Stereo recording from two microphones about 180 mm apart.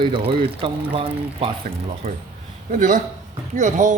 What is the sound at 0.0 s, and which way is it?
Speech, 30° right (ahead or behind).